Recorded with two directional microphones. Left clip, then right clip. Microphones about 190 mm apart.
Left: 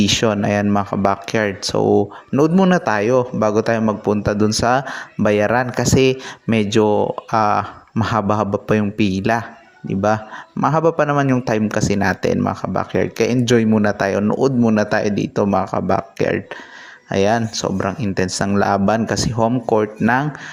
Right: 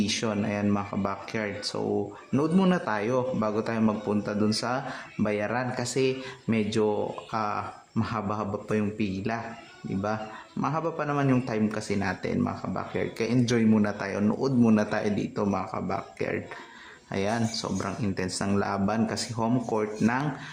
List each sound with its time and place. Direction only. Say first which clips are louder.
0.0 s a man's voice: left 12 dB; 40° left (ahead or behind)
10.6 s a man's voice: left 13 dB; 40° left (ahead or behind)